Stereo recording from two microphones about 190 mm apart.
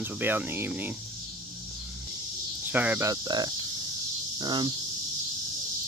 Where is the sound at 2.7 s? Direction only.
10° right (ahead or behind).